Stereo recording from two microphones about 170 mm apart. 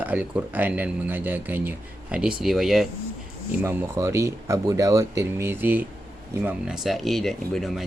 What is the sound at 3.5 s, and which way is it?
Speech, 15° right (ahead or behind).